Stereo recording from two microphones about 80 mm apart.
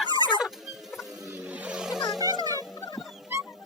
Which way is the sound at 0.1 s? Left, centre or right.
Left.